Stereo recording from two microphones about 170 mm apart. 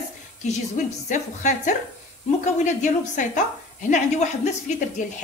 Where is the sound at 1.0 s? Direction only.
45° left (ahead or behind).